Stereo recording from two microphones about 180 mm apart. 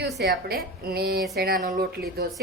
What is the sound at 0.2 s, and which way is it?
A woman's voice, 60° right (ahead or behind).